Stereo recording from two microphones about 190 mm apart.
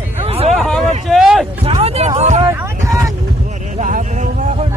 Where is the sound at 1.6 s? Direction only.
35° right (ahead or behind).